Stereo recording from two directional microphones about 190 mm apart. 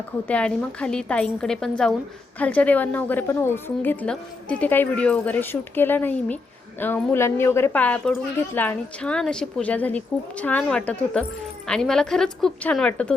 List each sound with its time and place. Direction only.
0.3 s a woman's voice: 5° left (ahead or behind)